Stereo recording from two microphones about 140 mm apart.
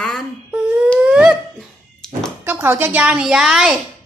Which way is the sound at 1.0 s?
10° right (ahead or behind).